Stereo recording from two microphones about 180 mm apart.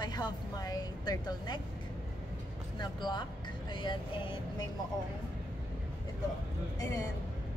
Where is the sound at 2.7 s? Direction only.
25° left (ahead or behind).